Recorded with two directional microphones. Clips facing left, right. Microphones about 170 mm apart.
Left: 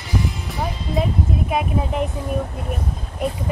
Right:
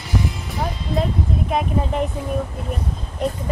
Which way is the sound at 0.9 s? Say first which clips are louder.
Left 1 dB; 5° left (ahead or behind).